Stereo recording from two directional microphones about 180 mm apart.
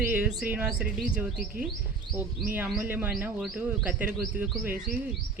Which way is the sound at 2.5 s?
10° right (ahead or behind).